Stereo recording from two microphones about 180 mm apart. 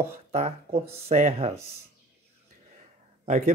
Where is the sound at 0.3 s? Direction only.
35° right (ahead or behind).